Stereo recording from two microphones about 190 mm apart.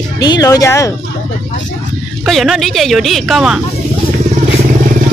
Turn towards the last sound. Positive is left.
turn(degrees=-5)  # may be behind; listen again after turning